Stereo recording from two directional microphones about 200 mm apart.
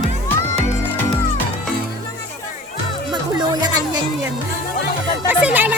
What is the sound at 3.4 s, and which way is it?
Music, 20° right (ahead or behind).